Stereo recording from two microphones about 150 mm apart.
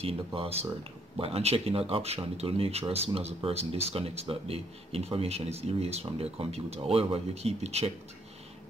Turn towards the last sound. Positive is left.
turn(degrees=-45)  # may be behind; listen again after turning